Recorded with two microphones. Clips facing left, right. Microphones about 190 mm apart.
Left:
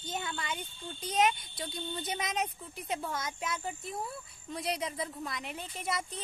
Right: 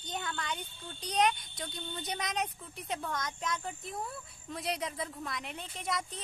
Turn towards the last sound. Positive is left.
turn(degrees=5)  # may be behind; listen again after turning